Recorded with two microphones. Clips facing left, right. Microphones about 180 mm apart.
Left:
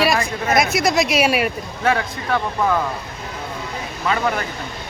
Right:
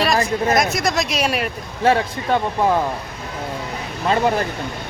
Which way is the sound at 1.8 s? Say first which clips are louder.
Right 3 dB; 30° right (ahead or behind).